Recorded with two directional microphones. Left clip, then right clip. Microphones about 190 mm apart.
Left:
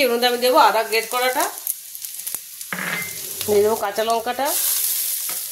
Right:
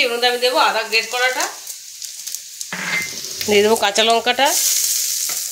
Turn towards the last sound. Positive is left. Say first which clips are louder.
# right 6 dB
turn(degrees=-5)  # may be behind; listen again after turning